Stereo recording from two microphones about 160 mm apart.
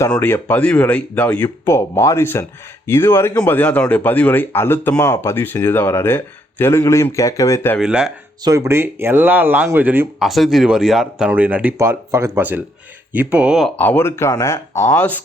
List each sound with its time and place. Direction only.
0.1 s speech: 15° left (ahead or behind)
7.8 s speech: 5° right (ahead or behind)
8.4 s speech: 20° right (ahead or behind)
10.2 s speech: centre (ahead or behind)
13.7 s speech: 10° left (ahead or behind)